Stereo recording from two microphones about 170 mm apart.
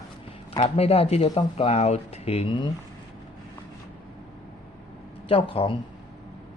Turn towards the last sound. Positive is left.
turn(degrees=30)  # may be behind; listen again after turning